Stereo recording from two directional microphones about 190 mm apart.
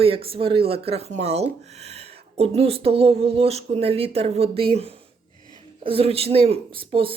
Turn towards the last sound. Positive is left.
turn(degrees=-30)  # may be behind; listen again after turning